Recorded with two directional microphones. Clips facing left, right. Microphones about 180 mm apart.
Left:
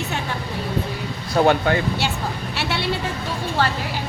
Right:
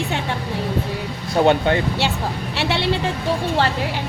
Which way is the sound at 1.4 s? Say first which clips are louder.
Right 2 dB; 25° right (ahead or behind).